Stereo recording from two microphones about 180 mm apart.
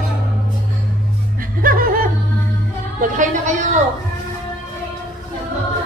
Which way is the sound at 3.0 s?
45° right (ahead or behind).